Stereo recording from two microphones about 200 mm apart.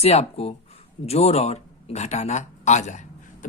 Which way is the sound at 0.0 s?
30° left (ahead or behind).